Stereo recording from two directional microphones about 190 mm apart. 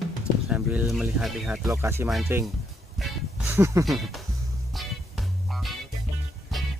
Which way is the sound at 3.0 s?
Centre (ahead or behind).